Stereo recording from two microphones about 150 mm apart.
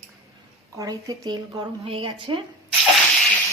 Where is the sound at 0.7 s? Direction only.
25° right (ahead or behind).